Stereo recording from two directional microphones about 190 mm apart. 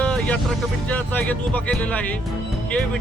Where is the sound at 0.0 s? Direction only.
5° left (ahead or behind).